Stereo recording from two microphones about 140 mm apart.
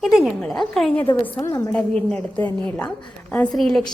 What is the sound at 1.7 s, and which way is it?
A woman's voice, 5° left (ahead or behind).